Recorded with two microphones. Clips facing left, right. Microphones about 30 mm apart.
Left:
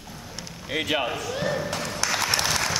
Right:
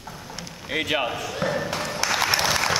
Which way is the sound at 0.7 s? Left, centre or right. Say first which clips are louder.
Right 1 dB; centre.